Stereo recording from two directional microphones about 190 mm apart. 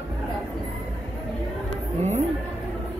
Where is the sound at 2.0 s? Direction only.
35° right (ahead or behind).